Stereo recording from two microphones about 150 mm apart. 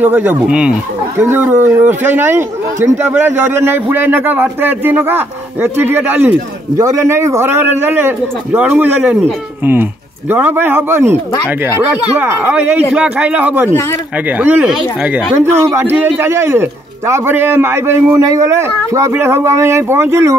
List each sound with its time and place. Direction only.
0.0 s a man's voice: 15° right (ahead or behind)
10.3 s a man's voice: 15° right (ahead or behind)
15.3 s a man's voice: 20° right (ahead or behind)